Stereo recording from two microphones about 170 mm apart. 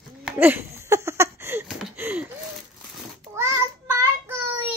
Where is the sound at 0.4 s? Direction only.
10° right (ahead or behind).